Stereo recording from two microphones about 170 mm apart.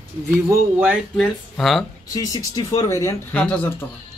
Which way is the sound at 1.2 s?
Centre (ahead or behind).